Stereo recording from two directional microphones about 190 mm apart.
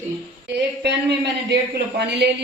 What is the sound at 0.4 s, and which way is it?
Speech, 60° right (ahead or behind).